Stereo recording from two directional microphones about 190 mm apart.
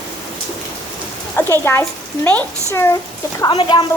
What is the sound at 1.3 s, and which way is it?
A child's voice, 10° left (ahead or behind).